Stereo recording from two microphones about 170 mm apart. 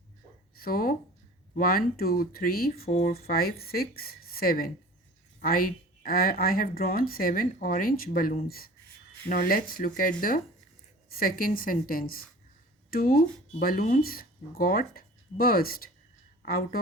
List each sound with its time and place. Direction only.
0.5 s speech: 60° left (ahead or behind)